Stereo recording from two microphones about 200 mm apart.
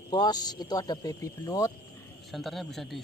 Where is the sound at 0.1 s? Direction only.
20° left (ahead or behind).